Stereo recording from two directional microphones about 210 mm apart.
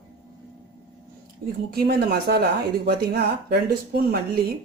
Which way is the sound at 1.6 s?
45° right (ahead or behind).